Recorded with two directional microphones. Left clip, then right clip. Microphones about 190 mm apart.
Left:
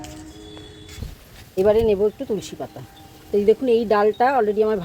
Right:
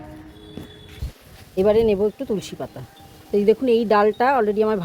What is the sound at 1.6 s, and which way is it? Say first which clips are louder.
Speech: even; 25° right (ahead or behind).